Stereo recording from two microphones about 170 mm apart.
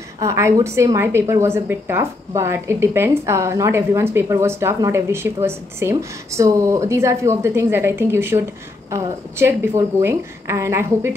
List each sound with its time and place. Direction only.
0.2 s a woman's voice: 15° right (ahead or behind)